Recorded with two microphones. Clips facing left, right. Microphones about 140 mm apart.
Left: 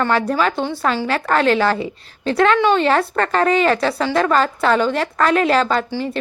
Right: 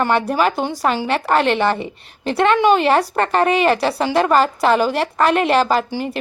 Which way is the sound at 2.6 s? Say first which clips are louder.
Right 1 dB; 15° right (ahead or behind).